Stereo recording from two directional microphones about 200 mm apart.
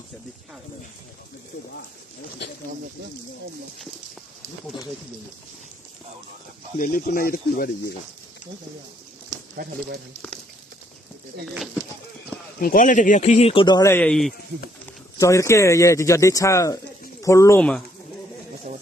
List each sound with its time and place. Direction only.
6.8 s speech: 45° left (ahead or behind)
12.5 s speech: 45° left (ahead or behind); by 14.3 s 5° left (ahead or behind)
15.1 s speech: 15° left (ahead or behind)